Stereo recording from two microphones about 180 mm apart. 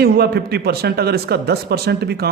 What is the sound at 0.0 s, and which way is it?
A man's voice, 60° right (ahead or behind).